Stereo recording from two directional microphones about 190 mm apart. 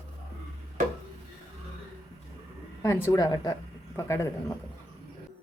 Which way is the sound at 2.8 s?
15° left (ahead or behind).